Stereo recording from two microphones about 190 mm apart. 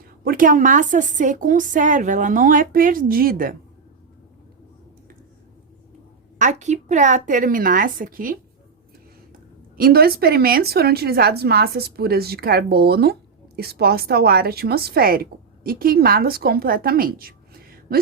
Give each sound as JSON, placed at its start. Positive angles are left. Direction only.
{"t": 0.0, "sound": "a woman's voice", "side_deg": -50}
{"t": 6.4, "sound": "a woman's voice", "side_deg": -40}
{"t": 9.7, "sound": "a woman's voice", "side_deg": -50}